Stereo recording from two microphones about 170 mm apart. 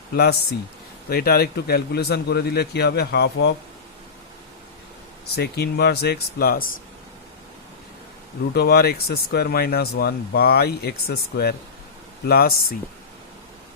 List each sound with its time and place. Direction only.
1.1 s speech: 65° left (ahead or behind)
5.4 s speech: 75° left (ahead or behind); by 6.8 s 60° left (ahead or behind)
8.5 s speech: 65° left (ahead or behind)